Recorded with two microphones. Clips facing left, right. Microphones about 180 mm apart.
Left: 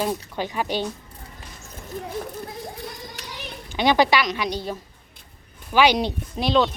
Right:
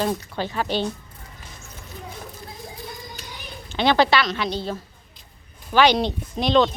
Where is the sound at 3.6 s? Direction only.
15° left (ahead or behind).